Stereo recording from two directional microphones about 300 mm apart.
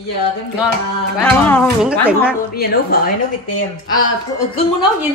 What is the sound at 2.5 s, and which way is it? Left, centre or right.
Speech, left.